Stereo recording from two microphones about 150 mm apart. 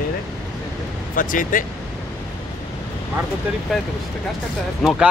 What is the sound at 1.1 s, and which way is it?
Speech, 65° left (ahead or behind).